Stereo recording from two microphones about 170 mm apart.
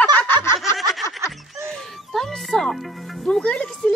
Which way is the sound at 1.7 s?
Centre (ahead or behind).